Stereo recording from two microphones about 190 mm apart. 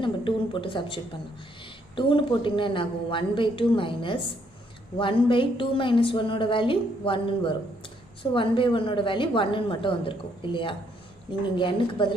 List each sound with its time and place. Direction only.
0.0 s a woman's voice: 25° left (ahead or behind)